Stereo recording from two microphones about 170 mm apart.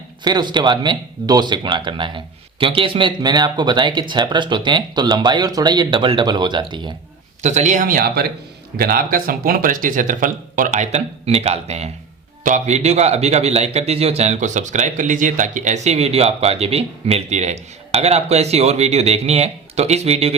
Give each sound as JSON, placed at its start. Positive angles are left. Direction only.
{"t": 0.3, "sound": "speech", "side_deg": -25}
{"t": 7.4, "sound": "a man's voice", "side_deg": -45}